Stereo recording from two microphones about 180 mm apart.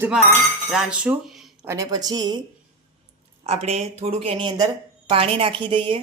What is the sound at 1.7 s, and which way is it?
Speech, 20° right (ahead or behind).